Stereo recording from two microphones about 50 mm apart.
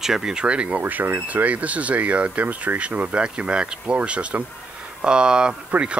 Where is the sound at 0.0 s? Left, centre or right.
Centre.